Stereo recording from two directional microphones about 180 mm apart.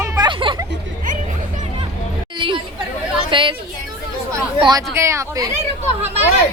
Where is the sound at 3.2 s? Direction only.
25° right (ahead or behind).